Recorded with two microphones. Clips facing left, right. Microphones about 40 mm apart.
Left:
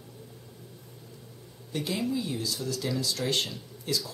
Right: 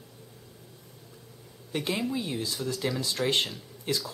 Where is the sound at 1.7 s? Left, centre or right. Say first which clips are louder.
Even; right.